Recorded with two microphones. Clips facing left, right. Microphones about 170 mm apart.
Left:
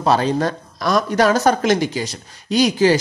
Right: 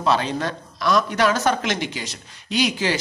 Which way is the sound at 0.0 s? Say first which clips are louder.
Left 5 dB; 40° left (ahead or behind).